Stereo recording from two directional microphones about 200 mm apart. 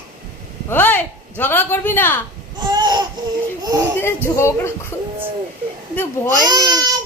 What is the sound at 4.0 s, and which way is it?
Speech, 10° left (ahead or behind).